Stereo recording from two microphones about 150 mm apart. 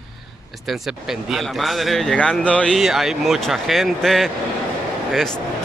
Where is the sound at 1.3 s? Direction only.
Centre (ahead or behind).